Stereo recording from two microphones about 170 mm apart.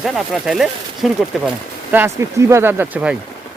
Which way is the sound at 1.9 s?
15° right (ahead or behind).